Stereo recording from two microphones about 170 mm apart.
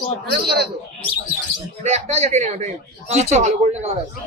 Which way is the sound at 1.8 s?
40° right (ahead or behind).